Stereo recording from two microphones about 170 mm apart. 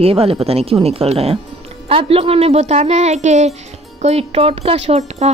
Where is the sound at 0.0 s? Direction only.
35° right (ahead or behind).